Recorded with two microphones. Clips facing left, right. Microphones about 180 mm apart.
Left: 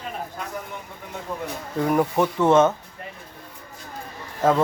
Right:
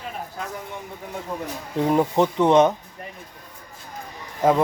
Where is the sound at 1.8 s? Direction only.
20° right (ahead or behind).